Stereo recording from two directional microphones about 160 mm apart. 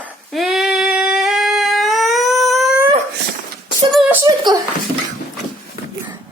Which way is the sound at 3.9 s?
5° right (ahead or behind).